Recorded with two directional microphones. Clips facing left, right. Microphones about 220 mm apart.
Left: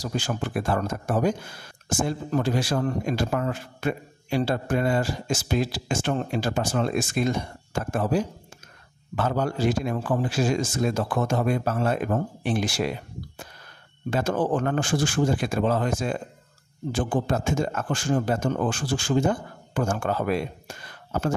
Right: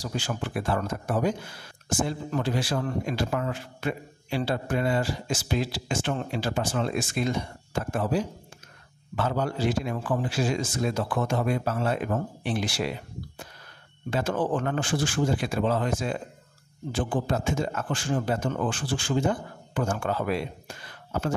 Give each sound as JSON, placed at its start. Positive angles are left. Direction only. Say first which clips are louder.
{"t": 0.0, "sound": "speech", "louder": "left 3 dB", "side_deg": 45}
{"t": 14.1, "sound": "speech", "louder": "left 2 dB", "side_deg": 45}